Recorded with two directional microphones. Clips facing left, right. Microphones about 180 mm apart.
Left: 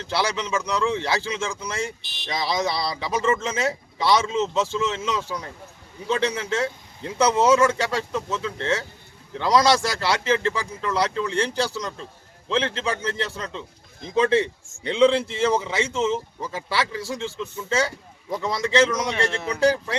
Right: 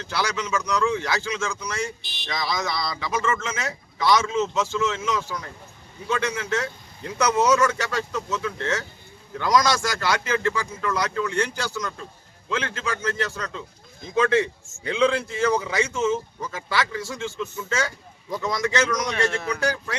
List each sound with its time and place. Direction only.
0.0 s a man's voice: 30° left (ahead or behind)